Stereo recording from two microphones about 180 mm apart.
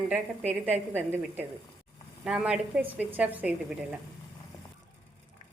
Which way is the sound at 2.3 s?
5° right (ahead or behind).